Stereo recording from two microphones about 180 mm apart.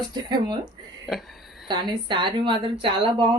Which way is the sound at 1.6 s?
25° right (ahead or behind).